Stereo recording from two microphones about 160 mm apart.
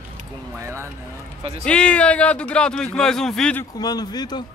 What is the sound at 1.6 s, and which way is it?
Speech, 5° left (ahead or behind).